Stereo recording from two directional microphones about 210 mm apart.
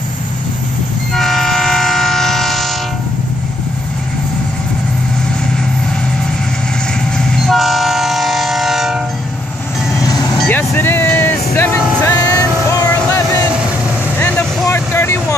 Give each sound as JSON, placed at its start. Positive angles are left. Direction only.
{"t": 1.1, "sound": "vehicle", "side_deg": 0}
{"t": 7.2, "sound": "train", "side_deg": 0}
{"t": 9.9, "sound": "vehicle", "side_deg": 15}
{"t": 10.3, "sound": "vehicle", "side_deg": 5}
{"t": 10.7, "sound": "music", "side_deg": 10}
{"t": 14.2, "sound": "vehicle", "side_deg": 10}